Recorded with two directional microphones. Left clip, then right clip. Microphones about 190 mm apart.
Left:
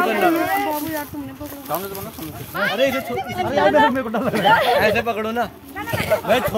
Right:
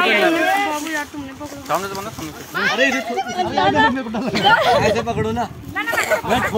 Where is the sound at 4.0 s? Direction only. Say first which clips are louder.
Left 2 dB; 30° left (ahead or behind).